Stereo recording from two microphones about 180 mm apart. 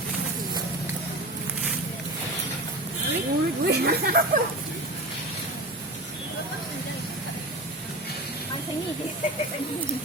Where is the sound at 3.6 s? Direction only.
60° right (ahead or behind).